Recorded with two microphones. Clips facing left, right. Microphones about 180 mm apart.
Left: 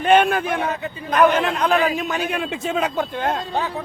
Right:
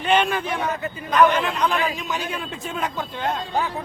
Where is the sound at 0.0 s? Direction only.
55° left (ahead or behind); by 2.9 s 90° left.